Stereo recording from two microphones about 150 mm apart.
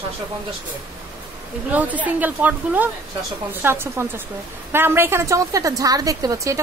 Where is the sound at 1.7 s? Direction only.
10° right (ahead or behind).